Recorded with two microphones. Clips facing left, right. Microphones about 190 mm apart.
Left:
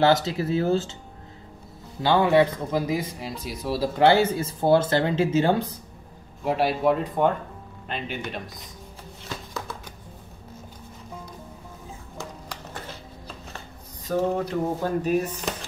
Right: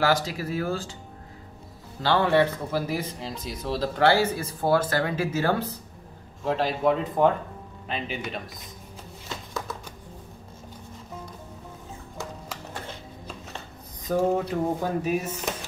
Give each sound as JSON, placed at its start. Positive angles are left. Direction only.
{"t": 0.0, "sound": "speech", "side_deg": 25}
{"t": 2.0, "sound": "speech", "side_deg": 15}
{"t": 14.0, "sound": "a sound", "side_deg": -10}